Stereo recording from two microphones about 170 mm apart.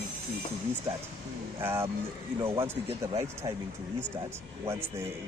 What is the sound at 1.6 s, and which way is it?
Speech, 15° right (ahead or behind).